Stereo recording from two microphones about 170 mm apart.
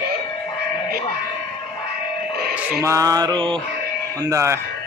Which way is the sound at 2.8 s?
20° right (ahead or behind).